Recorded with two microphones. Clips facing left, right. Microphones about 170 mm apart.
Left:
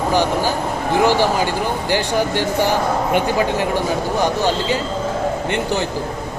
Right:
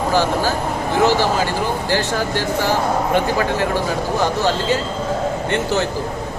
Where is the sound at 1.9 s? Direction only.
15° left (ahead or behind).